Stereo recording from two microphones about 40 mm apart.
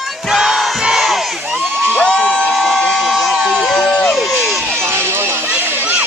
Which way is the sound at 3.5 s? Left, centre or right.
Centre.